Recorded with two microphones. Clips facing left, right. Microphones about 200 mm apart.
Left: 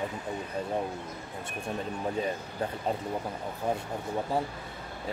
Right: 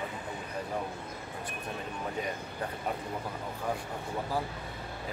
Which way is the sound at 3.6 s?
25° left (ahead or behind).